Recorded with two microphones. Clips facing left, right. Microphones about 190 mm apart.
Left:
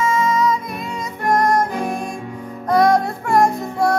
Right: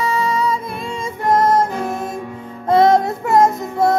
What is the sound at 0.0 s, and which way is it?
Music, 35° right (ahead or behind).